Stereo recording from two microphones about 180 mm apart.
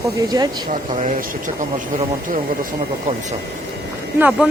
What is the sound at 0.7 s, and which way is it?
Speech, 45° right (ahead or behind).